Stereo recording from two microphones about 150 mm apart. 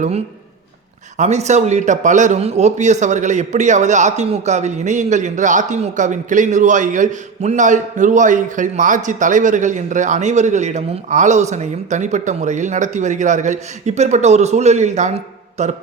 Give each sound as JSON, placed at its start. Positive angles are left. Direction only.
{"t": 1.2, "sound": "a man's voice", "side_deg": -50}